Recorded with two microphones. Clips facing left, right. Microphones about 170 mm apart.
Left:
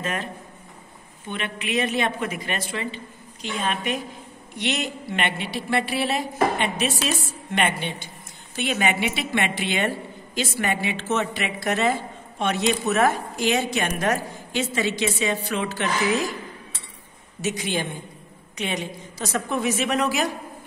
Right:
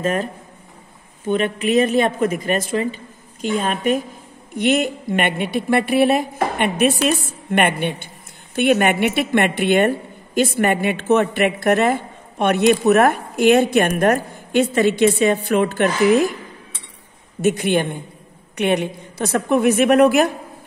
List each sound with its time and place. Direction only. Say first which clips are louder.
0.0 s a woman's voice: right 8 dB; 45° right (ahead or behind)
1.3 s a woman's voice: right 10 dB; 40° right (ahead or behind)
17.4 s a woman's voice: right 9 dB; 55° right (ahead or behind)